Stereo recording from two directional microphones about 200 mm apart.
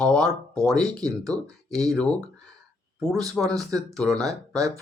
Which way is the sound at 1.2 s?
15° right (ahead or behind).